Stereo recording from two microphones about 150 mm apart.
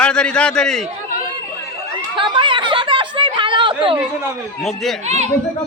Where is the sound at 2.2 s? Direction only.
30° right (ahead or behind).